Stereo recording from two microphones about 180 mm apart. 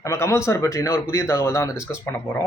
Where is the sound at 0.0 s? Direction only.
15° left (ahead or behind).